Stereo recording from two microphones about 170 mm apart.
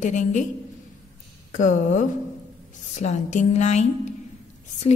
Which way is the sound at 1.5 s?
50° left (ahead or behind).